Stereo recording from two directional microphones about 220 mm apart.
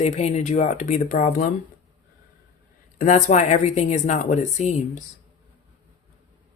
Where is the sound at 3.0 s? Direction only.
35° left (ahead or behind).